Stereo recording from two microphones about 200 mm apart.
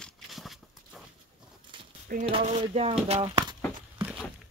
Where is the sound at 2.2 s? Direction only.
30° right (ahead or behind).